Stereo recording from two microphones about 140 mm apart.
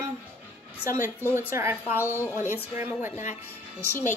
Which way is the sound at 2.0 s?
15° left (ahead or behind).